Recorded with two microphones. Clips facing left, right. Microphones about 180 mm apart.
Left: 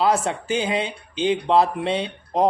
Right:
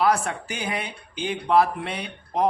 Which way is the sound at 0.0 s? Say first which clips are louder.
Left 2 dB; 25° left (ahead or behind).